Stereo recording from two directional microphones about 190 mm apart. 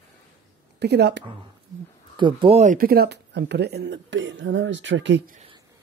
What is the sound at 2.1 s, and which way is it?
Speech, 25° right (ahead or behind).